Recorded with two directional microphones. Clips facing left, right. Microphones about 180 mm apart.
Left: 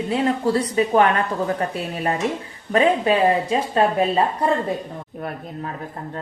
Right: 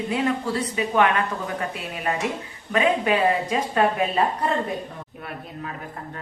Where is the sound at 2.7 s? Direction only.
35° left (ahead or behind).